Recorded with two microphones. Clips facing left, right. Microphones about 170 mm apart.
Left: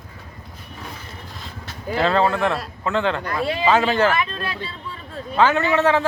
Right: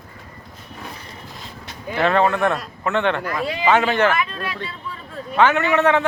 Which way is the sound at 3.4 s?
30° left (ahead or behind).